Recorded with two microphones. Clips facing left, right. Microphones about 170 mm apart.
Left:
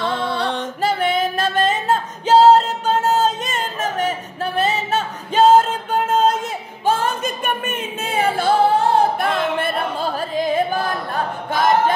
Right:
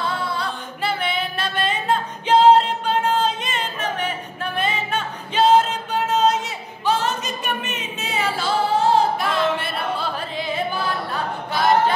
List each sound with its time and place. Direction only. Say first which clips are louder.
0.0 s music: left 4 dB; 90° left
0.8 s music: left 5 dB; 45° left (ahead or behind)
6.8 s singing: left 2 dB; 50° left (ahead or behind)